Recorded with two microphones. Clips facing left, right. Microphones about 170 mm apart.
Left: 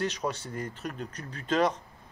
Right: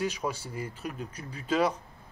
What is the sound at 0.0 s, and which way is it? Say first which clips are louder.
Speech: even; 10° right (ahead or behind).